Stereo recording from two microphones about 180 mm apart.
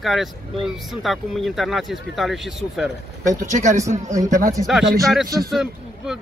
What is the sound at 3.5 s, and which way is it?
Speech, 40° right (ahead or behind).